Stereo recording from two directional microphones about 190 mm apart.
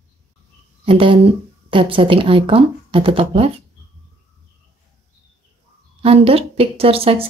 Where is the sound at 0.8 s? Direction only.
30° right (ahead or behind).